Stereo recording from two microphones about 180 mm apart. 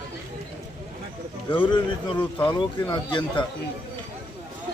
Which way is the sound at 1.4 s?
10° left (ahead or behind).